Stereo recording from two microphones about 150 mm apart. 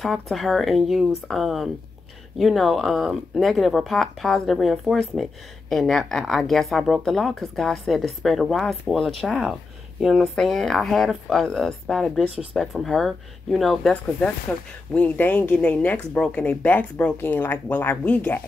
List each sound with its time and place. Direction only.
0.0 s speech: centre (ahead or behind)